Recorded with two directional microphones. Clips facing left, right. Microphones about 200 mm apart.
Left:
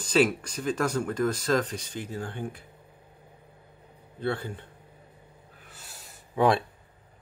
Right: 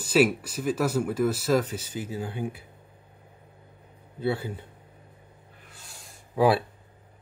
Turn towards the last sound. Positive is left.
turn(degrees=-5)  # may be behind; listen again after turning